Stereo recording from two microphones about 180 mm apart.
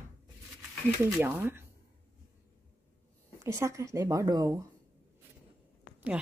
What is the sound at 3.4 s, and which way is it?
A woman's voice, 15° right (ahead or behind).